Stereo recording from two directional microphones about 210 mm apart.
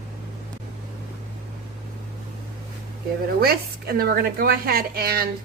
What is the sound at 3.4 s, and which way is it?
A child's voice, 45° right (ahead or behind).